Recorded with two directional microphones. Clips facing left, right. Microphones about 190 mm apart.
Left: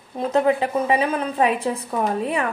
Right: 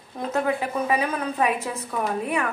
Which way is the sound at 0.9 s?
30° left (ahead or behind).